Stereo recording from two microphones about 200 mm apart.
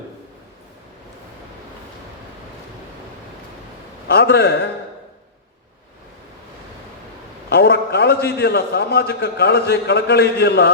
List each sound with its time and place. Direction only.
4.1 s a man's voice: 55° left (ahead or behind)
7.5 s a man's voice: 60° left (ahead or behind)